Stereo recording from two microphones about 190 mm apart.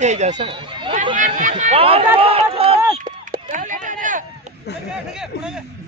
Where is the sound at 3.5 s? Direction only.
40° right (ahead or behind).